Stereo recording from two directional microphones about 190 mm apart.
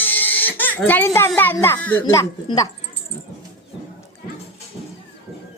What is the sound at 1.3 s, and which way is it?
A child's voice, 10° left (ahead or behind).